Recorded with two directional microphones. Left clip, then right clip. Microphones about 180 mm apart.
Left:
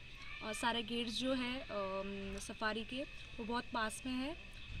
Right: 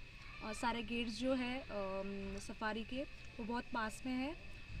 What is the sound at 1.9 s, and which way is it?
Speech, centre (ahead or behind).